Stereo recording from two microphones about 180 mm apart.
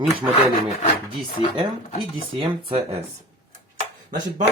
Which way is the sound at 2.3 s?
30° right (ahead or behind).